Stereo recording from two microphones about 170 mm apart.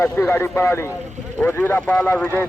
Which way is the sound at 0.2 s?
10° left (ahead or behind).